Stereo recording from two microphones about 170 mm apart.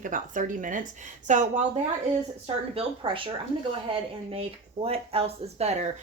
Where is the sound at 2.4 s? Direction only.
35° right (ahead or behind).